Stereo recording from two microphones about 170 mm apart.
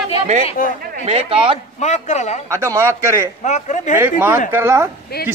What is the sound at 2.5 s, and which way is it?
Speech, 15° right (ahead or behind).